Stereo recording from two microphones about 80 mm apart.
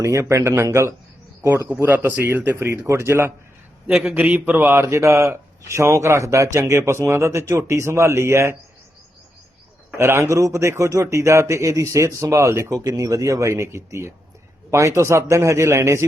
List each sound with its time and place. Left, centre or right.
0.0 s a man's voice: right
3.8 s a man's voice: centre; by 8.5 s right
10.0 s a man's voice: right
12.7 s a man's voice: right